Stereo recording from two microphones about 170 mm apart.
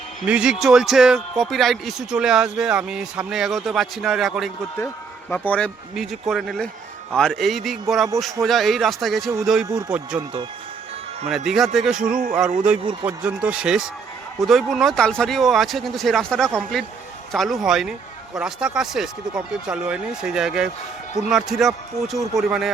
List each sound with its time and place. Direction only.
0.2 s a man's voice: 5° right (ahead or behind)
11.4 s a man's voice: centre (ahead or behind)
12.0 s speech: 55° right (ahead or behind)
12.3 s a man's voice: 5° right (ahead or behind)